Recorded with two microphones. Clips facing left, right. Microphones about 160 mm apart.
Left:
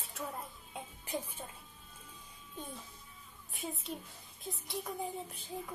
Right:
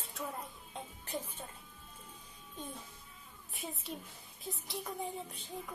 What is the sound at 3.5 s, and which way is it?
Speech, centre (ahead or behind).